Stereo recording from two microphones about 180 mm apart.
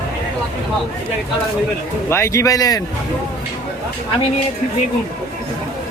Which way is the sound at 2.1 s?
15° left (ahead or behind).